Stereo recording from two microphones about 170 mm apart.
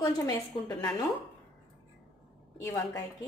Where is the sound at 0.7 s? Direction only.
20° left (ahead or behind).